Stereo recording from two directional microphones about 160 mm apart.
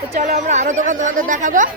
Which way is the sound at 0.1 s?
50° right (ahead or behind).